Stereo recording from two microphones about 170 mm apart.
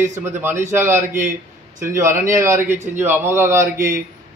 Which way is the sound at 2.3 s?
15° right (ahead or behind).